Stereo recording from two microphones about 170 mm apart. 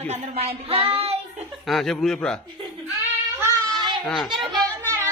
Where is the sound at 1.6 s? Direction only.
Centre (ahead or behind).